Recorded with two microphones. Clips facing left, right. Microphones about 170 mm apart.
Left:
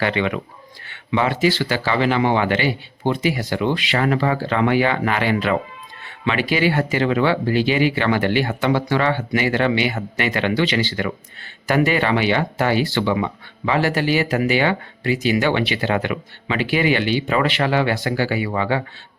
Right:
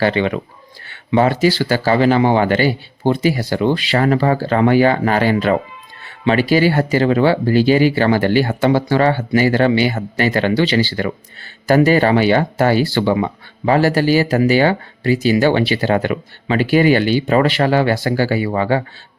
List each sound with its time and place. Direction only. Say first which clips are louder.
0.0 s speech: right 4 dB; 35° right (ahead or behind)